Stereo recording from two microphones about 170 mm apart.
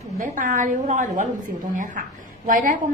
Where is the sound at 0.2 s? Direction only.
50° right (ahead or behind).